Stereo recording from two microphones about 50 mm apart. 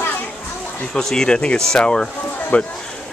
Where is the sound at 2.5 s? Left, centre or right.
Left.